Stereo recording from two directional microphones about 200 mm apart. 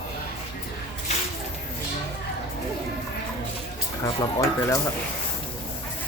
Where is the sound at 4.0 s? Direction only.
20° left (ahead or behind).